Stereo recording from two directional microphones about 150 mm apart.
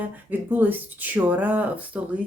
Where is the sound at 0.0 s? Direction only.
10° right (ahead or behind).